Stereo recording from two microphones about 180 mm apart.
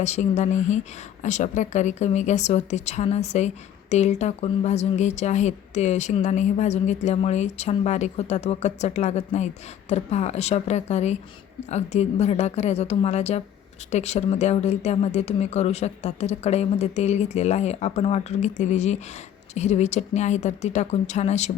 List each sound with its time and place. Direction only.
0.0 s speech: 40° left (ahead or behind)